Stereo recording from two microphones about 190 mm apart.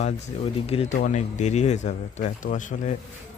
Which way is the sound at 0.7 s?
30° left (ahead or behind).